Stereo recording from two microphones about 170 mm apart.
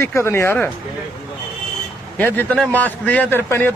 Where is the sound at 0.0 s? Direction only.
15° left (ahead or behind).